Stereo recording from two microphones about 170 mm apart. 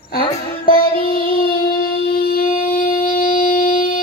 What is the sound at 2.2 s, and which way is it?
Wind instrument, 60° left (ahead or behind).